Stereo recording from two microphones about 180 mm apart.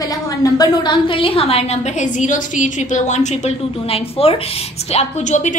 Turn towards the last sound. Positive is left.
turn(degrees=40)  # may be behind; listen again after turning